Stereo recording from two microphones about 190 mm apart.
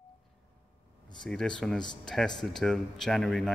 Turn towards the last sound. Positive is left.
turn(degrees=0)  # may be behind; listen again after turning